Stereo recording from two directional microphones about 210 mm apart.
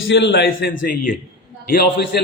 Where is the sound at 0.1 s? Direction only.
55° left (ahead or behind).